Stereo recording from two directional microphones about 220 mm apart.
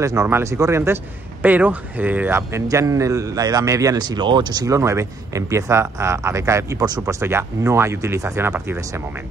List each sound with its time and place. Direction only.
0.0 s a man's voice: 15° right (ahead or behind)